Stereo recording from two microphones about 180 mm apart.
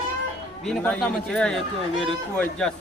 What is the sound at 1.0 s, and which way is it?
A man's voice, 5° left (ahead or behind).